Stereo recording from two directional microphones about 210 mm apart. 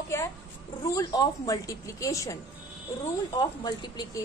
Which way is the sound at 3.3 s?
20° left (ahead or behind).